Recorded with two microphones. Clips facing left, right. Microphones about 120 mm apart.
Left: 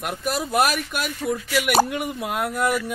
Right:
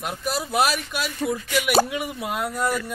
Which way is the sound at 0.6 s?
50° left (ahead or behind).